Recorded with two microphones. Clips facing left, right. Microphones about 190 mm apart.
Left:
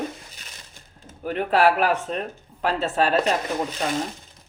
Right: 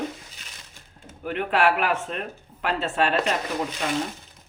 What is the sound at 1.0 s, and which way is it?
Speech, 40° left (ahead or behind).